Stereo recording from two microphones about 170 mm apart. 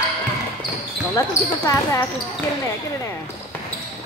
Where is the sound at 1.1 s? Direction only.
20° left (ahead or behind).